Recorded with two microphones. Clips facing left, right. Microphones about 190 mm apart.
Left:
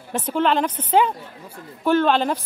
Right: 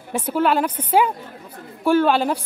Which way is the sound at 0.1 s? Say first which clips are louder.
Right 1 dB; 10° right (ahead or behind).